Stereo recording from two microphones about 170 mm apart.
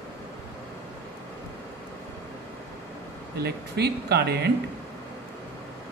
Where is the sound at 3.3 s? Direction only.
70° right (ahead or behind).